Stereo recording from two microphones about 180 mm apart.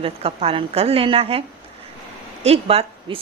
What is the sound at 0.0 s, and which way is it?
A woman's voice, 35° right (ahead or behind).